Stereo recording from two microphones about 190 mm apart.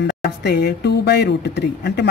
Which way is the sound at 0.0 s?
60° left (ahead or behind).